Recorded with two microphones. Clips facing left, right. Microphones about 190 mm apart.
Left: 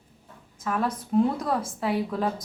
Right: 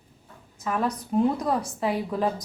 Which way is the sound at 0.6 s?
5° right (ahead or behind).